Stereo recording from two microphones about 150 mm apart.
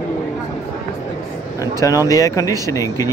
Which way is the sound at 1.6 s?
20° left (ahead or behind).